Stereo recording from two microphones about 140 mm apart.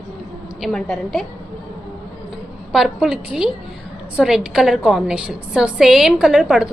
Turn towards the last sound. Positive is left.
turn(degrees=-5)  # may be behind; listen again after turning